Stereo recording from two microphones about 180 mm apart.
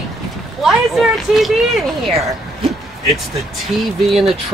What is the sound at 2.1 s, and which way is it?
Speech, 35° right (ahead or behind).